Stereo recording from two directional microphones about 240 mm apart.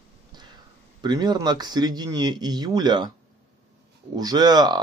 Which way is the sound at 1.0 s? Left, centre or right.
Centre.